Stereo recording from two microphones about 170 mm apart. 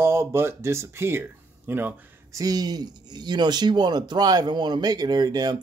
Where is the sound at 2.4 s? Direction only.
20° right (ahead or behind).